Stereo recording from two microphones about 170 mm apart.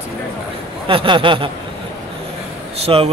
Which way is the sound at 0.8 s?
30° right (ahead or behind).